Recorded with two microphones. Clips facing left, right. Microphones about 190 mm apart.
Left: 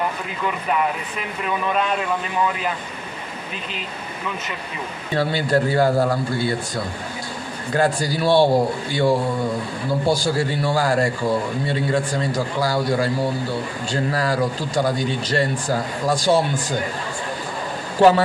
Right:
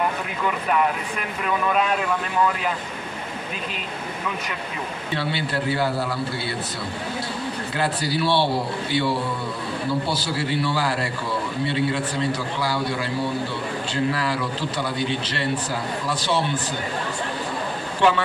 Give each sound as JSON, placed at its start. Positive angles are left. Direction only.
{"t": 1.4, "sound": "speech", "side_deg": 0}
{"t": 5.1, "sound": "speech", "side_deg": 45}
{"t": 7.7, "sound": "speech", "side_deg": 45}
{"t": 17.9, "sound": "speech", "side_deg": 40}